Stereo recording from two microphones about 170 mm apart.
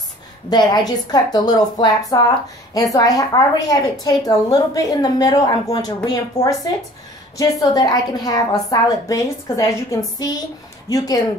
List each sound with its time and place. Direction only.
0.5 s a woman's voice: 25° left (ahead or behind)